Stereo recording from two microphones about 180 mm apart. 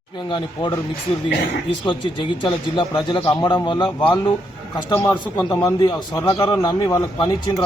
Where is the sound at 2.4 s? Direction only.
25° left (ahead or behind).